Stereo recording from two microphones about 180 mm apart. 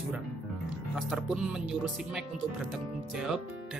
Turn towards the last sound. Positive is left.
turn(degrees=-5)  # may be behind; listen again after turning